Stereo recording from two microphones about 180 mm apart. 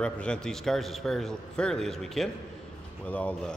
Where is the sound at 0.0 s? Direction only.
5° left (ahead or behind).